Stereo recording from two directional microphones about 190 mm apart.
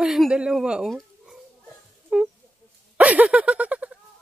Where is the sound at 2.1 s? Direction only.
5° right (ahead or behind).